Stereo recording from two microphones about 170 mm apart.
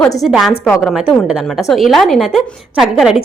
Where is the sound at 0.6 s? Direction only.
10° left (ahead or behind).